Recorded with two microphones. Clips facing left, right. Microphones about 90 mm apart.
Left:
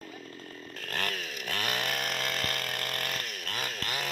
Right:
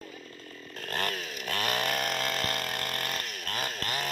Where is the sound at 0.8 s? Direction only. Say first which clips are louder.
Right 2 dB; 5° right (ahead or behind).